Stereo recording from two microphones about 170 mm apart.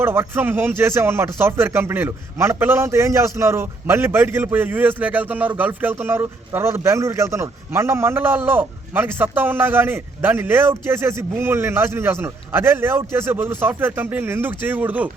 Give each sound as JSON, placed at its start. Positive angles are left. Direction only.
{"t": 0.0, "sound": "speech", "side_deg": -15}